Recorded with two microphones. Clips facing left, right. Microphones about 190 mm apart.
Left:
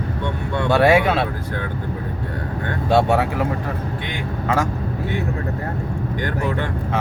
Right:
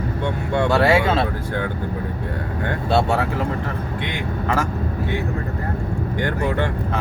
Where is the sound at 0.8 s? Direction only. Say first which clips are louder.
Left 5 dB; 20° left (ahead or behind).